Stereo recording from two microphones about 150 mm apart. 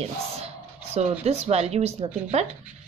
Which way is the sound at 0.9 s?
45° right (ahead or behind).